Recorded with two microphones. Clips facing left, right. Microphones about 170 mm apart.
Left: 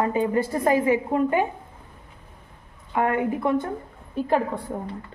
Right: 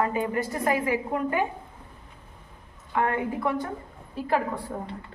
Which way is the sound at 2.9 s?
25° left (ahead or behind).